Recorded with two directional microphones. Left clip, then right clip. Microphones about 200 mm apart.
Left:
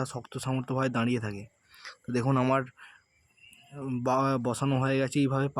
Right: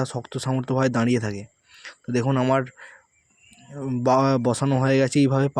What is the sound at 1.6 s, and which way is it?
Speech, 5° right (ahead or behind).